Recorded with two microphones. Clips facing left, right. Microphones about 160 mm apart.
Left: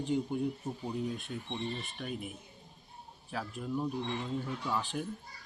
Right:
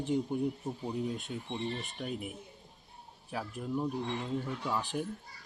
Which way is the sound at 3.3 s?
15° right (ahead or behind).